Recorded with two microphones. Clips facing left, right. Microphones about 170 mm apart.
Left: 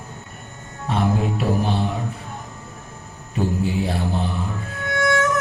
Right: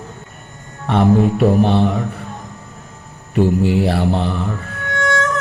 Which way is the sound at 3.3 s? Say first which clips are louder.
Right 7 dB; 75° right (ahead or behind).